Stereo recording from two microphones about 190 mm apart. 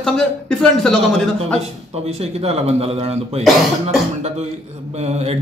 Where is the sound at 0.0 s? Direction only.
5° left (ahead or behind).